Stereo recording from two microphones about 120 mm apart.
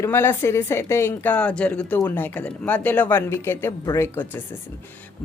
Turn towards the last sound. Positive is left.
turn(degrees=20)  # may be behind; listen again after turning